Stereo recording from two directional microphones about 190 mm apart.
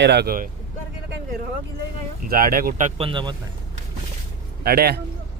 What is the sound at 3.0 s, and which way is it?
Speech, 25° right (ahead or behind).